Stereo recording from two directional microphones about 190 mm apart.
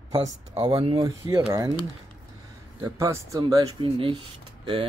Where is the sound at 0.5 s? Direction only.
30° right (ahead or behind).